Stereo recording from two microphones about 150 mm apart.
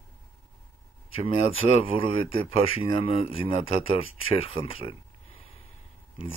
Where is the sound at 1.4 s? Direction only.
40° left (ahead or behind).